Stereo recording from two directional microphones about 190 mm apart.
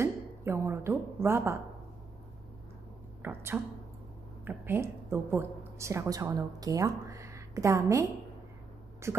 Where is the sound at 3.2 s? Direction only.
10° right (ahead or behind).